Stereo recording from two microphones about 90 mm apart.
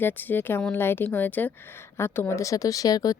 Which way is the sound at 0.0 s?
20° left (ahead or behind).